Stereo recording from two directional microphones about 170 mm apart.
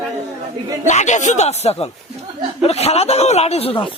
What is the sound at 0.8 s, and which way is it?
Speech, 45° left (ahead or behind).